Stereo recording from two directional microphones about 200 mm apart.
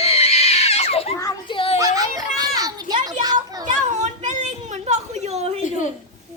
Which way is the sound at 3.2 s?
20° right (ahead or behind).